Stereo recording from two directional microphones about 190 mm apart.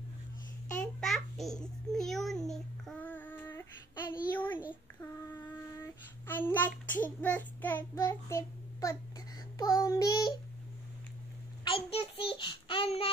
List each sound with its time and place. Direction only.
0.7 s babbling: centre (ahead or behind)
4.3 s child singing: 10° left (ahead or behind)
11.6 s child singing: 30° left (ahead or behind)